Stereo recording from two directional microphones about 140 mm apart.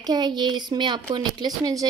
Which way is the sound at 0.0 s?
30° right (ahead or behind).